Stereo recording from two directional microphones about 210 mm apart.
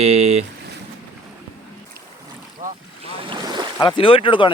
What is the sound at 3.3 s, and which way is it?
Boat, 20° right (ahead or behind).